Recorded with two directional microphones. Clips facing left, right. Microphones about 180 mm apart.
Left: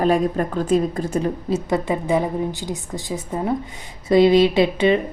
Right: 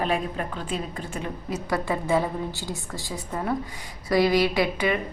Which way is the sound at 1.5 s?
20° left (ahead or behind).